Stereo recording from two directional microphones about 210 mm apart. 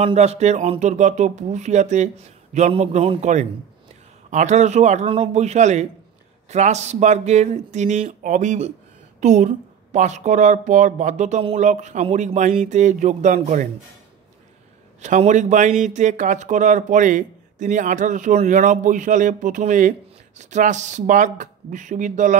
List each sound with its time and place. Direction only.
0.0 s speech: 30° right (ahead or behind)
15.0 s speech: 35° right (ahead or behind)